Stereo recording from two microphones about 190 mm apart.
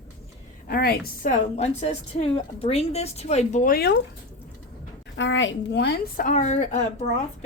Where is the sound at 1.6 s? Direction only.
35° left (ahead or behind); by 4.0 s 55° left (ahead or behind).